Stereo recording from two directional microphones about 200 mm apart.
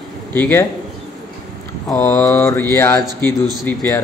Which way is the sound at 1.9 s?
15° left (ahead or behind).